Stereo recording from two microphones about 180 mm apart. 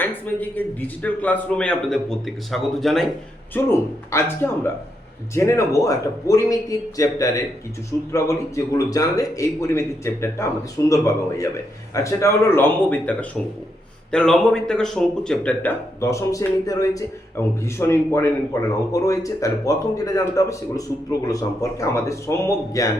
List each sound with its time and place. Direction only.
0.0 s a man's voice: 10° left (ahead or behind)
3.5 s a man's voice: 15° left (ahead or behind)